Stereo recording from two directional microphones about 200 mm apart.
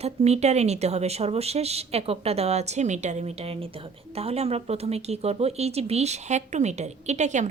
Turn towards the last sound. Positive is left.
turn(degrees=-35)  # may be behind; listen again after turning